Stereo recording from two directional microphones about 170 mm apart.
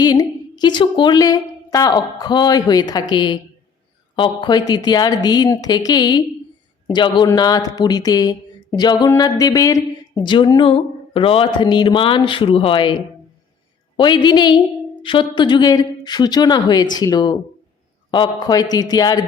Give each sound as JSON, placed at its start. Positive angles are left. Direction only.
{"t": 0.0, "sound": "a woman's voice", "side_deg": 25}